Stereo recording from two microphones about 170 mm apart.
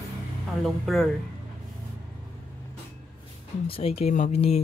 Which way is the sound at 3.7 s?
35° left (ahead or behind).